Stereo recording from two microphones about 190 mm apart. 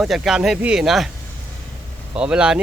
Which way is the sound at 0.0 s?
Centre (ahead or behind).